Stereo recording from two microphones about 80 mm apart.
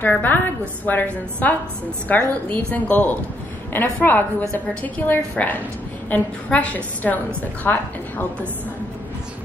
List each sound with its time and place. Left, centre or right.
0.0 s a woman's voice: left